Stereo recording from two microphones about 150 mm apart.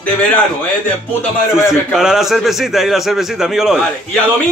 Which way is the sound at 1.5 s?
5° right (ahead or behind).